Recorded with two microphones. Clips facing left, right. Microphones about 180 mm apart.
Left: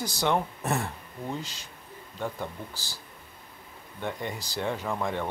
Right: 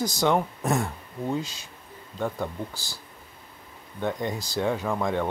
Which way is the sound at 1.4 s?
15° right (ahead or behind).